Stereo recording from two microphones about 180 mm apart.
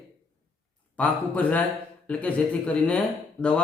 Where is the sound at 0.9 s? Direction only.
10° left (ahead or behind).